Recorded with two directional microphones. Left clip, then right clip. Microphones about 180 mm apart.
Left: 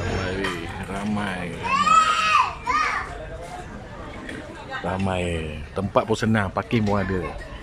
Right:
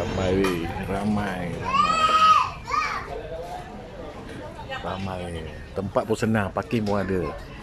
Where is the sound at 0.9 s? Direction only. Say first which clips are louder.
Even; centre (ahead or behind).